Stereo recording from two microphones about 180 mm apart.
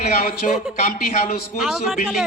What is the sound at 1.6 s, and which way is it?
Speech, 5° right (ahead or behind).